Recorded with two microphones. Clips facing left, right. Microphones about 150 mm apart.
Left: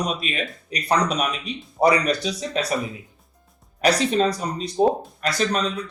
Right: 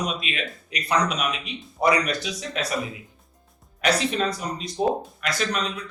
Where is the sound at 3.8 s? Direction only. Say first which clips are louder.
Left 4 dB; 35° left (ahead or behind).